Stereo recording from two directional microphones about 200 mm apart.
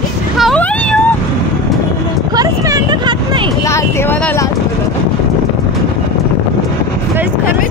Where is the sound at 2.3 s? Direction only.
15° right (ahead or behind).